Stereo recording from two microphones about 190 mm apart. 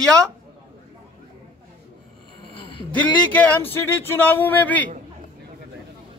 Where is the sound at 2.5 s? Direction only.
25° left (ahead or behind).